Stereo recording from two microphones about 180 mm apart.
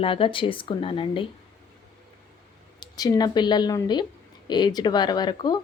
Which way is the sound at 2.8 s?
20° left (ahead or behind).